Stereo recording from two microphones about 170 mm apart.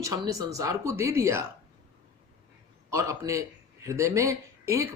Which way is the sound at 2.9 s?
20° right (ahead or behind).